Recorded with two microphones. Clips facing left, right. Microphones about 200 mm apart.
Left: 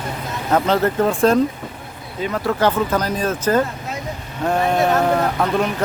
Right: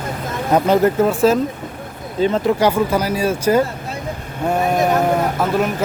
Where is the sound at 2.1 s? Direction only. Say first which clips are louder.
Right 7 dB; 30° right (ahead or behind).